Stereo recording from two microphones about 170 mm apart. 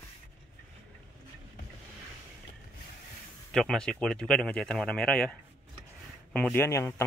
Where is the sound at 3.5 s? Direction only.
Centre (ahead or behind).